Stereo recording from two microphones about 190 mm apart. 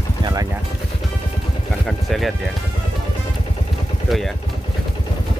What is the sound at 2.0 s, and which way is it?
Speech, centre (ahead or behind).